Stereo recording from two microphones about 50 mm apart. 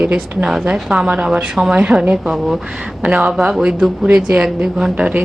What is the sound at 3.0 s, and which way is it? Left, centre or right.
A woman's voice, centre.